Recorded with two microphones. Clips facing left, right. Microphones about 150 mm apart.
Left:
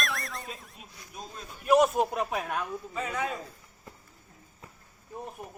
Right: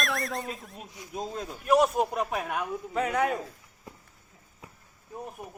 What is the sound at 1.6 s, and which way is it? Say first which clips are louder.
Speech: left 1 dB; centre (ahead or behind).